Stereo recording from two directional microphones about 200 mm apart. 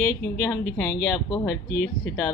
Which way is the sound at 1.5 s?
55° left (ahead or behind).